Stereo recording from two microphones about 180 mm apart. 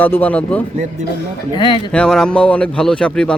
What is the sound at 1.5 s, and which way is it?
Speech, 25° left (ahead or behind).